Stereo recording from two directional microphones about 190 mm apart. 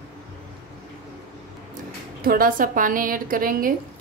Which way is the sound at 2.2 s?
50° right (ahead or behind).